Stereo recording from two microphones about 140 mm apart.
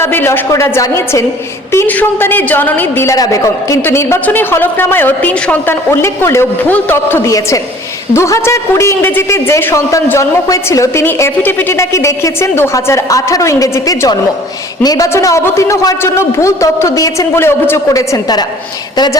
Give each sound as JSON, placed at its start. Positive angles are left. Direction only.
{"t": 0.0, "sound": "a man's voice", "side_deg": 15}